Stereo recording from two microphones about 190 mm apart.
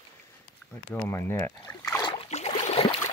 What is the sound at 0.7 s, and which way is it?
Speech, 10° left (ahead or behind).